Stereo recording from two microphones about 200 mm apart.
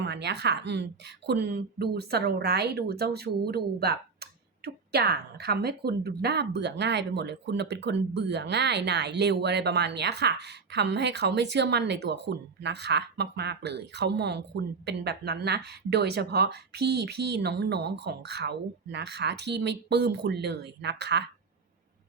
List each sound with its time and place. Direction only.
0.0 s speech: 60° right (ahead or behind)